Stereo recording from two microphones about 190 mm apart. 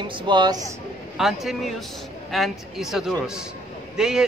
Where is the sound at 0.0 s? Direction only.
25° right (ahead or behind).